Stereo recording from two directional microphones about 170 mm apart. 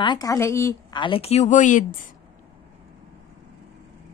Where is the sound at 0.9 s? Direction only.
30° left (ahead or behind); by 2.0 s 50° left (ahead or behind).